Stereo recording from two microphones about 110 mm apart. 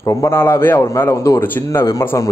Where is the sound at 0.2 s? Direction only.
25° left (ahead or behind).